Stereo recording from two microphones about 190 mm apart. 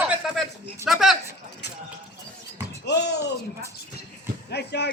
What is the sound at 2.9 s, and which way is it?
Speech, 65° left (ahead or behind).